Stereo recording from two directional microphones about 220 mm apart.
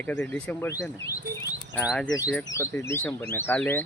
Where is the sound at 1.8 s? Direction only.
Centre (ahead or behind).